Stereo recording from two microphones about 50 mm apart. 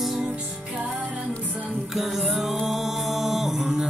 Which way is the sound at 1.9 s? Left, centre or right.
Centre.